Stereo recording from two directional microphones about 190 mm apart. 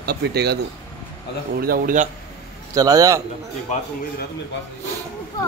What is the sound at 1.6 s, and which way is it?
Speech, 50° right (ahead or behind).